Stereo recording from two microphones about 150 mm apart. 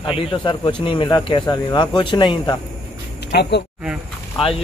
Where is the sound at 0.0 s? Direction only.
35° left (ahead or behind).